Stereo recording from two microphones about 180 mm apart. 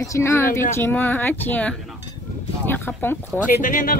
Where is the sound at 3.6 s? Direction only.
50° left (ahead or behind).